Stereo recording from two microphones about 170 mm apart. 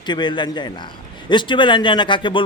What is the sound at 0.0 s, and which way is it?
Speech, 25° left (ahead or behind).